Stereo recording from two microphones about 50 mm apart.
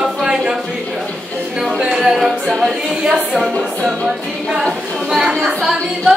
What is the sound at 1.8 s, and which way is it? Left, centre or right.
A capella, centre.